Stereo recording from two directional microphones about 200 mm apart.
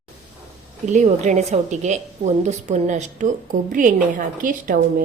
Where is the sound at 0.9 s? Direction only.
35° right (ahead or behind).